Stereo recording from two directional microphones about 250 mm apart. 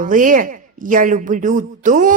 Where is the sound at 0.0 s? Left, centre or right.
Right.